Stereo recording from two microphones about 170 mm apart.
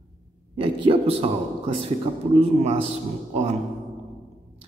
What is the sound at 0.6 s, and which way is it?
Speech, 30° right (ahead or behind).